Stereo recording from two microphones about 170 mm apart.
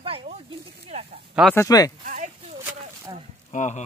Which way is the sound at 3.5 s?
45° left (ahead or behind).